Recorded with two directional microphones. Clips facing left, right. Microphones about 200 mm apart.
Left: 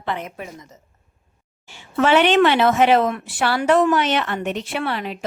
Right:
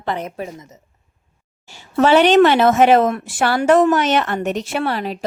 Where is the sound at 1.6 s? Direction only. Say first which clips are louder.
Right 3 dB; 40° right (ahead or behind).